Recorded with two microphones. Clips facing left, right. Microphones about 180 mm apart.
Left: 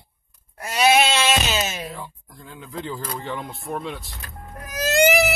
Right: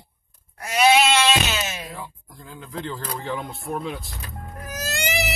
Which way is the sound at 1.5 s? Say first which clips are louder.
Left 3 dB; 35° left (ahead or behind).